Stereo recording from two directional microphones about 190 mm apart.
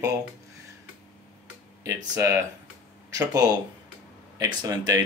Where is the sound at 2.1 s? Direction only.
15° right (ahead or behind).